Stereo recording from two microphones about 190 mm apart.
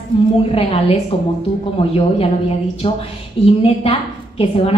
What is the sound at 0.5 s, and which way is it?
Speech, 30° left (ahead or behind).